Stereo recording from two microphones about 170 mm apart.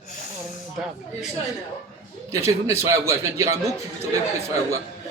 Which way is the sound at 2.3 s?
15° right (ahead or behind).